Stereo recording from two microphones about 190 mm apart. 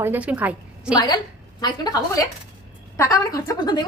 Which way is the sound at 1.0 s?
20° left (ahead or behind).